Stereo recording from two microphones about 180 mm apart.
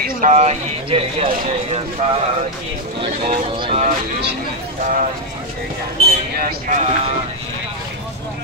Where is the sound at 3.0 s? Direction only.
30° right (ahead or behind).